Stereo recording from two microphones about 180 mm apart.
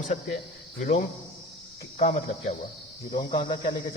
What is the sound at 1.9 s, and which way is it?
Speech, 35° left (ahead or behind).